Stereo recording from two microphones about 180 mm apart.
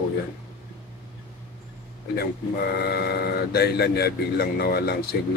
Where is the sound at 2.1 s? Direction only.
60° left (ahead or behind).